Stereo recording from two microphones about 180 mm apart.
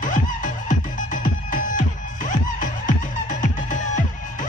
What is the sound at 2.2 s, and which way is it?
Music, 45° left (ahead or behind).